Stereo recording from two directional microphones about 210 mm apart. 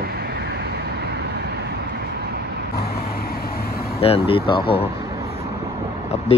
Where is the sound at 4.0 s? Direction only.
25° left (ahead or behind).